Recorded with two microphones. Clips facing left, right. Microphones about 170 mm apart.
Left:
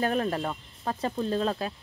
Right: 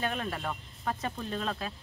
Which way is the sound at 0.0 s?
35° left (ahead or behind).